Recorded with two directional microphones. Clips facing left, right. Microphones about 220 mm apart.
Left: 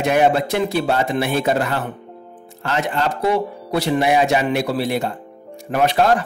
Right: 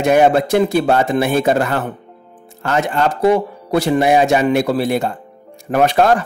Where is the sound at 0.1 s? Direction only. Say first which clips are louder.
Right 5 dB; 45° right (ahead or behind).